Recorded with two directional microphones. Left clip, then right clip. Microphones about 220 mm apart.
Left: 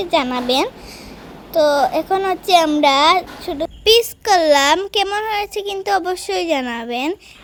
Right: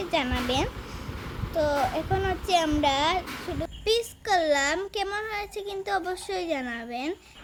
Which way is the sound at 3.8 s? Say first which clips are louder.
Left 13 dB; 35° left (ahead or behind).